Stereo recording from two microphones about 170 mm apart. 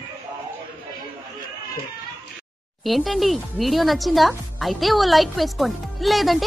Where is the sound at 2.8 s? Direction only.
Centre (ahead or behind).